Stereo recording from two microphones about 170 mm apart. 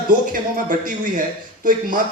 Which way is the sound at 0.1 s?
25° right (ahead or behind).